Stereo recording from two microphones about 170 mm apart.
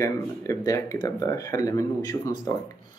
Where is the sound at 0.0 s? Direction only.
20° left (ahead or behind).